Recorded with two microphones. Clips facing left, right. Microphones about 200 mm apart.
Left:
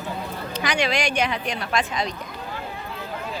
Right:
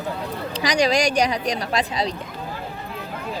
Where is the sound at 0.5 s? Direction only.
35° right (ahead or behind).